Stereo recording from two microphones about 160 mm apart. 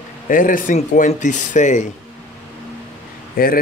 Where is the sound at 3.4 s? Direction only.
65° left (ahead or behind).